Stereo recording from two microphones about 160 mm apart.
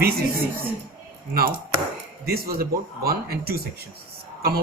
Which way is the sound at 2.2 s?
75° right (ahead or behind).